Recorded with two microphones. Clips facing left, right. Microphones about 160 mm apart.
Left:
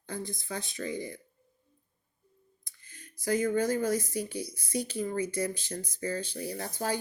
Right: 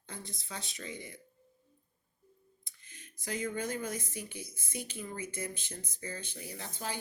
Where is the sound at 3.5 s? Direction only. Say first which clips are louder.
Left 9 dB; 35° left (ahead or behind).